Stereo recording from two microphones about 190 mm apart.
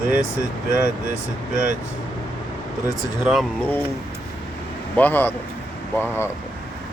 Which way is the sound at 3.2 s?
Centre (ahead or behind).